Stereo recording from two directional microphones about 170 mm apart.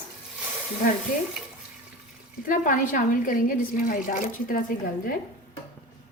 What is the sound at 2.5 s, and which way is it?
Speech, 55° left (ahead or behind).